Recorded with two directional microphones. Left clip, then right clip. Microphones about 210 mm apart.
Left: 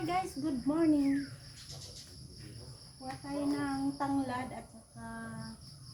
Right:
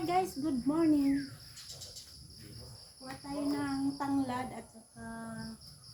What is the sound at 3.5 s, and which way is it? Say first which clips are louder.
Speech: right 1 dB; 5° right (ahead or behind).